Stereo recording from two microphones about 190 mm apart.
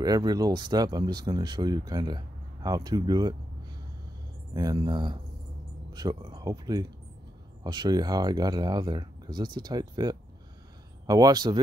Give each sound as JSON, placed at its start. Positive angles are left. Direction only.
{"t": 0.0, "sound": "speech", "side_deg": -20}
{"t": 4.6, "sound": "speech", "side_deg": -20}